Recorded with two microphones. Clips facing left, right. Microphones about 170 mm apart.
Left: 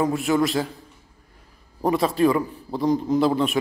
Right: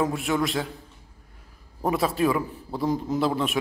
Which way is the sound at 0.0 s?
Centre (ahead or behind).